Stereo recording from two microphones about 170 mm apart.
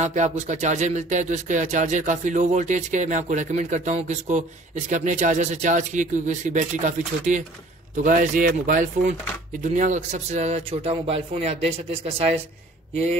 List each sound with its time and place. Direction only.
0.0 s speech: 45° right (ahead or behind)